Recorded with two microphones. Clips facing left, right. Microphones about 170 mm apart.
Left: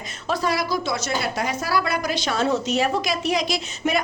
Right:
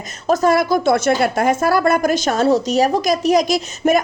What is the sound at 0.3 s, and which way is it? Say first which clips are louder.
Speech: right 9 dB; 50° right (ahead or behind).